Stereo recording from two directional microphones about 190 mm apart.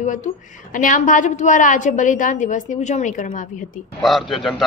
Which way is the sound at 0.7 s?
45° left (ahead or behind).